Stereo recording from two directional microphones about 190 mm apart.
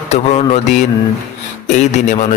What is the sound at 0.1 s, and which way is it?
A man's voice, 35° left (ahead or behind).